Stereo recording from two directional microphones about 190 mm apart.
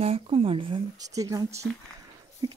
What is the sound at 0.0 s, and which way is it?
Speech, 30° right (ahead or behind).